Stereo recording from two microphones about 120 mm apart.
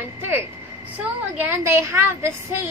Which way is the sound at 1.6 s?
25° right (ahead or behind).